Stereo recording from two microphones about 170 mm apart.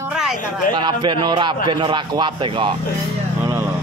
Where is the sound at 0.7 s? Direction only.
30° right (ahead or behind).